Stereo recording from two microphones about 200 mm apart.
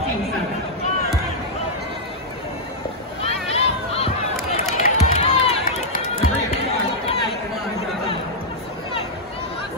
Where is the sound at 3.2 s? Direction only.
30° left (ahead or behind).